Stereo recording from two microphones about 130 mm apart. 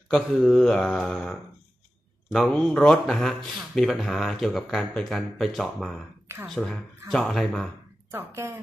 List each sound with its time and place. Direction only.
0.1 s speech: 5° left (ahead or behind)
8.1 s speech: 20° right (ahead or behind)